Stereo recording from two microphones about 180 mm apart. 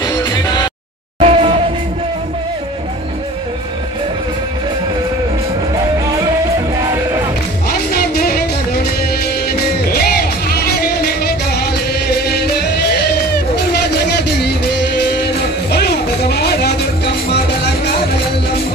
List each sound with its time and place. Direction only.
0.0 s music: 20° left (ahead or behind)
1.2 s music: 30° right (ahead or behind)
9.5 s music: 60° left (ahead or behind)
14.1 s music: 65° left (ahead or behind)
15.7 s music: 65° left (ahead or behind)